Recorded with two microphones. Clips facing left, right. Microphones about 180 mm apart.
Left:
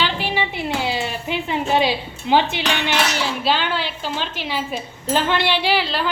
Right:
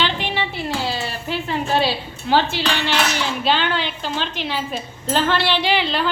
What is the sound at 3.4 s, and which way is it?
A woman's voice, 5° left (ahead or behind).